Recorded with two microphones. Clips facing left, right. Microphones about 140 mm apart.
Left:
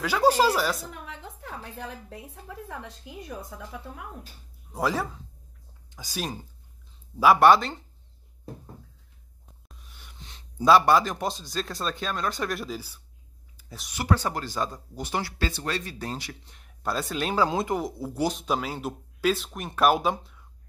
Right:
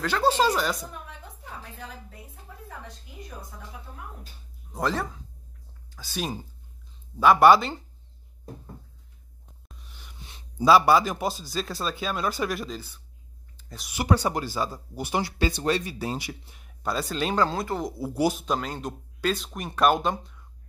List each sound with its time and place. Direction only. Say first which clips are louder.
0.0 s a woman's voice: left 1 dB; 10° left (ahead or behind)
0.8 s a sound: left 1 dB; 70° left (ahead or behind)
4.7 s a woman's voice: left 1 dB; 5° left (ahead or behind)
5.9 s a sound: left 3 dB; 20° left (ahead or behind)
7.2 s a man's voice: right 1 dB; centre (ahead or behind)
9.7 s a sound: right 2 dB; centre (ahead or behind)
10.1 s a man's voice: right 1 dB; 10° right (ahead or behind)
13.9 s speech: right 2 dB; 15° right (ahead or behind); by 17.5 s 5° left (ahead or behind)
17.5 s a woman's voice: left 2 dB; 15° left (ahead or behind)
17.8 s speech: right 3 dB; 10° right (ahead or behind)
18.4 s a man's voice: even; 5° left (ahead or behind)